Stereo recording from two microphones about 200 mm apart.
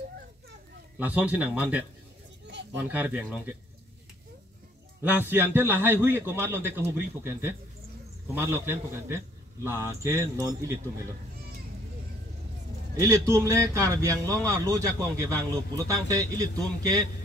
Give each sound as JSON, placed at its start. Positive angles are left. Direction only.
{"t": 0.9, "sound": "a man's voice", "side_deg": -5}
{"t": 5.0, "sound": "a man's voice", "side_deg": -10}
{"t": 12.9, "sound": "a man's voice", "side_deg": -15}